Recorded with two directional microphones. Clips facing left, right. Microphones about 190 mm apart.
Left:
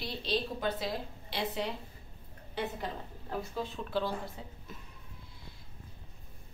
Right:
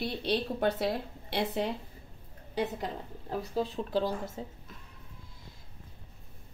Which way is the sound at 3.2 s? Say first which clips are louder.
Right 5 dB; 35° right (ahead or behind).